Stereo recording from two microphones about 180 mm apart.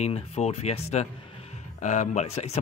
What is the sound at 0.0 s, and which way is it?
Speech, 35° left (ahead or behind).